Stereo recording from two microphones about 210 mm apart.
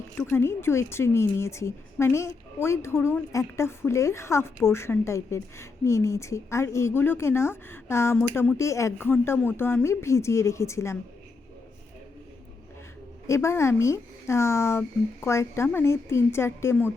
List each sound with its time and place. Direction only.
0.2 s a woman's voice: 10° left (ahead or behind)
13.2 s a woman's voice: 15° left (ahead or behind)